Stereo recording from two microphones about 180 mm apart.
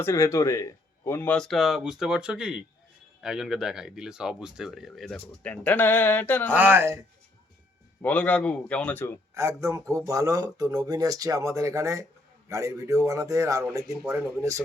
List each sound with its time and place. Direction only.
0.0 s speech: 15° left (ahead or behind)
6.5 s a man's voice: 10° right (ahead or behind)
8.0 s speech: 10° left (ahead or behind)
9.3 s a man's voice: 15° right (ahead or behind)